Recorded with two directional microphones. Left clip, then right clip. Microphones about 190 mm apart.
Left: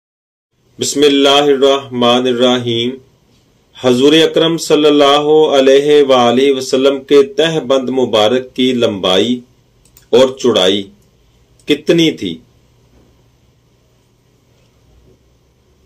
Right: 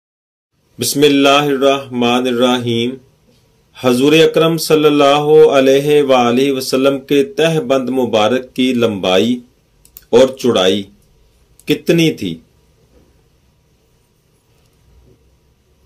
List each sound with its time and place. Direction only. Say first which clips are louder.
0.7 s speech: left 1 dB; 50° right (ahead or behind)